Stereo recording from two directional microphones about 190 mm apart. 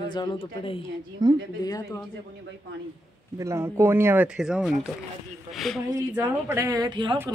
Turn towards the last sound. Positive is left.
turn(degrees=-25)  # may be behind; listen again after turning